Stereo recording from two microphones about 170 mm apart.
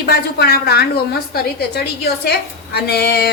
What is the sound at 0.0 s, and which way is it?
A woman's voice, 65° left (ahead or behind).